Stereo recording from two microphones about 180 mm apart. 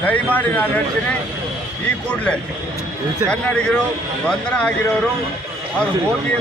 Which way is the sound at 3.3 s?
5° left (ahead or behind).